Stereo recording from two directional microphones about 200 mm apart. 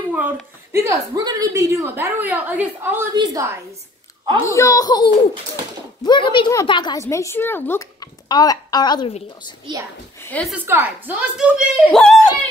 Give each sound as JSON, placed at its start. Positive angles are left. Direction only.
{"t": 0.7, "sound": "a woman's voice", "side_deg": -15}
{"t": 4.4, "sound": "a woman's voice", "side_deg": 15}
{"t": 10.2, "sound": "speech", "side_deg": 5}
{"t": 10.5, "sound": "speech", "side_deg": -10}